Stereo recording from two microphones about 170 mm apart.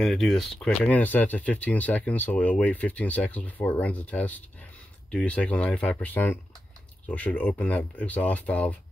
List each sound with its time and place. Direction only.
0.0 s speech: centre (ahead or behind)